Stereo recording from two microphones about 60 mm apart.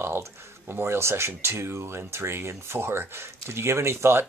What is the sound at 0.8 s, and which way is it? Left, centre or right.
Speech, right.